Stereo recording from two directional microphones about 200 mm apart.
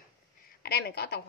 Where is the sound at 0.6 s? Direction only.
55° left (ahead or behind).